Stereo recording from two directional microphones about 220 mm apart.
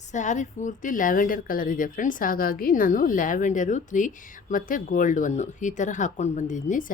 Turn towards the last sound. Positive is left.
turn(degrees=35)  # may be behind; listen again after turning